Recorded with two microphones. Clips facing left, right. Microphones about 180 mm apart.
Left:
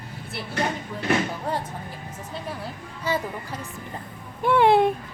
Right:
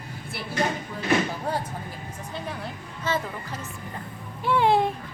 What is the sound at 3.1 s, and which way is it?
Speech, 15° left (ahead or behind).